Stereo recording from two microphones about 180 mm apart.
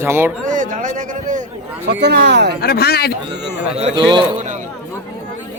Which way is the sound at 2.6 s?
60° left (ahead or behind).